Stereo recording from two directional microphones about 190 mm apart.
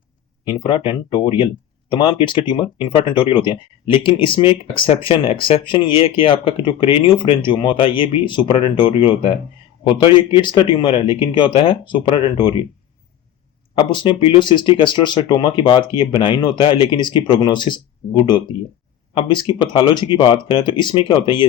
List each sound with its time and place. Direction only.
0.4 s speech: 25° left (ahead or behind)
13.7 s speech: 25° left (ahead or behind)